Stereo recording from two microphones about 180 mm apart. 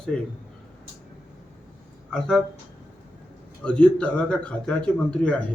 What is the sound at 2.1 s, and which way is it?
Speech, 5° left (ahead or behind).